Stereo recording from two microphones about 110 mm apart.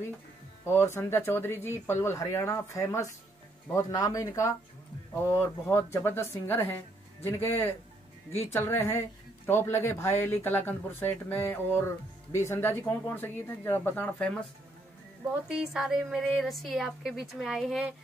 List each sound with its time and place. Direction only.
0.7 s speech: 20° left (ahead or behind)
8.3 s speech: 75° left (ahead or behind)
8.5 s speech: 20° left (ahead or behind)
15.4 s a woman's voice: 5° right (ahead or behind)